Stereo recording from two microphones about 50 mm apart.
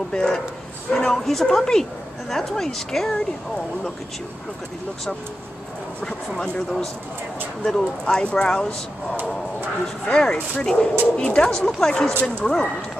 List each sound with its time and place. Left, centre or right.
0.1 s speech: centre
5.9 s speech: centre
10.1 s speech: centre